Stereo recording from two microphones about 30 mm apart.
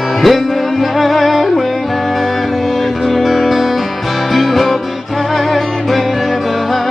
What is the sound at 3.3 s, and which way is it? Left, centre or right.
Music, centre.